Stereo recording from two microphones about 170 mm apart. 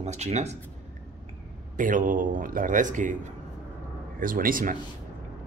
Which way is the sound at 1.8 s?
50° right (ahead or behind).